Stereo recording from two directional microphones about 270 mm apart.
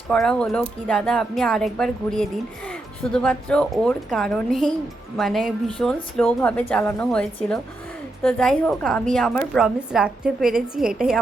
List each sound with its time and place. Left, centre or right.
0.1 s a woman's voice: centre